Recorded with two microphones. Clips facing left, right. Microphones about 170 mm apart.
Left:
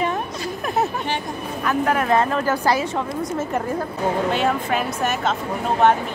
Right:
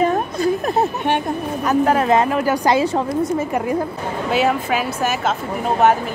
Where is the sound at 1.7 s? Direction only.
35° right (ahead or behind).